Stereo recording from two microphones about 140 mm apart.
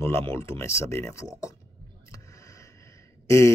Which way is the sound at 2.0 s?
20° left (ahead or behind).